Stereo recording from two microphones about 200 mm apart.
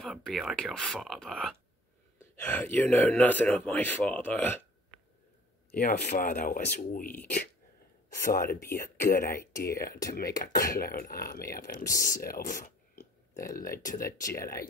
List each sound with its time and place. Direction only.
0.0 s speech: centre (ahead or behind)
5.7 s speech: 45° left (ahead or behind)
8.2 s speech: 45° left (ahead or behind)